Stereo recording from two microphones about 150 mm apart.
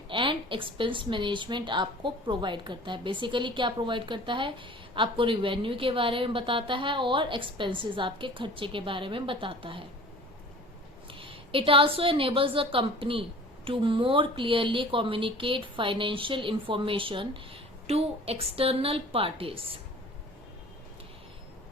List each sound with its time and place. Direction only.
0.1 s a woman's voice: 35° right (ahead or behind)
11.1 s a woman's voice: 35° right (ahead or behind)